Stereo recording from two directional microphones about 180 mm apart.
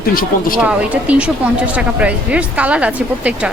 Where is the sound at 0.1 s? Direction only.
50° left (ahead or behind).